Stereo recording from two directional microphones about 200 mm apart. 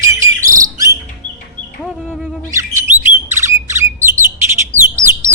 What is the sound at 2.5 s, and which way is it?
Bird, 15° right (ahead or behind).